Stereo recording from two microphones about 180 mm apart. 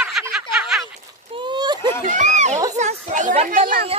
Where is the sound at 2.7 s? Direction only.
40° right (ahead or behind).